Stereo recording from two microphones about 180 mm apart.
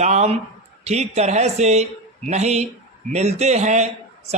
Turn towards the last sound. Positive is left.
turn(degrees=-40)  # may be behind; listen again after turning